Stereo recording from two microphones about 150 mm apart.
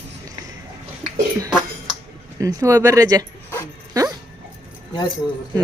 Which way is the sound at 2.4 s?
20° right (ahead or behind).